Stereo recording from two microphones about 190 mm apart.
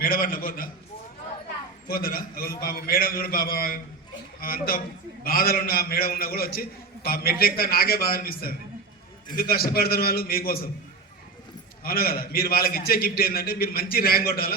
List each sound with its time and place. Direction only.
0.0 s a man's voice: 50° left (ahead or behind)
1.9 s a man's voice: 50° left (ahead or behind)
11.8 s a man's voice: 50° left (ahead or behind)